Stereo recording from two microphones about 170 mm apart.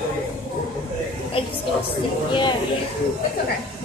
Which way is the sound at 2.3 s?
30° left (ahead or behind).